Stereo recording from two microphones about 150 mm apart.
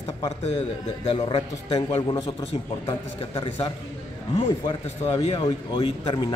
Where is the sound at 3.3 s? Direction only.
35° left (ahead or behind).